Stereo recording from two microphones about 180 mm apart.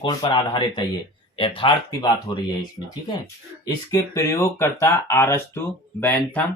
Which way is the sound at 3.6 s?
15° left (ahead or behind).